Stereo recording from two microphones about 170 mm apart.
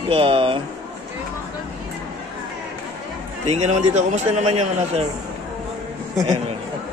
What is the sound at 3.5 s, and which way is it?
A man's voice, 40° right (ahead or behind).